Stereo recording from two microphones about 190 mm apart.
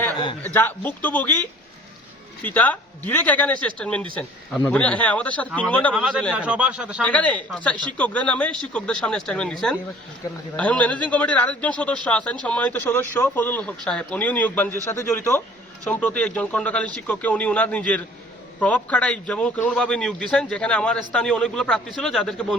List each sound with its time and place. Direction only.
0.5 s speech: 10° left (ahead or behind)
2.4 s speech: 10° left (ahead or behind)
5.9 s a man's voice: 5° right (ahead or behind)
7.0 s a man's voice: 5° left (ahead or behind)